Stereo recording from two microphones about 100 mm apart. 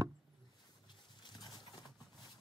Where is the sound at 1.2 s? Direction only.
45° left (ahead or behind).